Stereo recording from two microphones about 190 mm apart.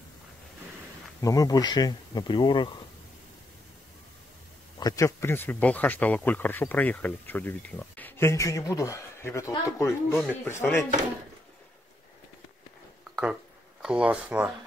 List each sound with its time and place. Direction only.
1.2 s speech: 20° left (ahead or behind)
4.7 s speech: 20° left (ahead or behind)
13.8 s speech: 5° right (ahead or behind)